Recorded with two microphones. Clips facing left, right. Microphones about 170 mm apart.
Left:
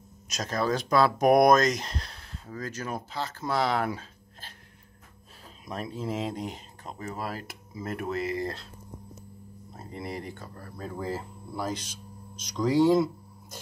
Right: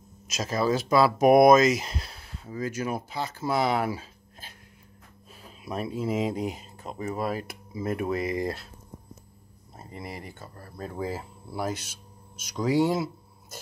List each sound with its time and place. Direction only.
0.3 s speech: 5° right (ahead or behind)
5.7 s speech: 10° right (ahead or behind)
9.9 s speech: 5° right (ahead or behind)